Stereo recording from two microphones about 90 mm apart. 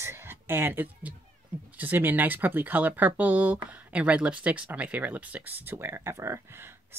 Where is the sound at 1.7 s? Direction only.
20° right (ahead or behind).